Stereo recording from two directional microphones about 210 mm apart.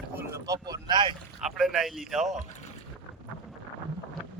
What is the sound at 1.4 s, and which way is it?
Speech, centre (ahead or behind).